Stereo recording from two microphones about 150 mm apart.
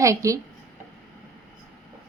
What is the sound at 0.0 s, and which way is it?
Speech, 20° right (ahead or behind).